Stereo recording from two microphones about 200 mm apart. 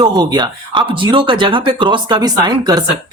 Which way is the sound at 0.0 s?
20° right (ahead or behind).